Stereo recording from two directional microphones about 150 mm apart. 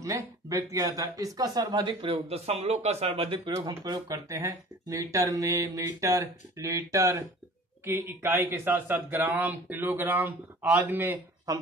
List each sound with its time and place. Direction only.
0.0 s a man's voice: 20° right (ahead or behind)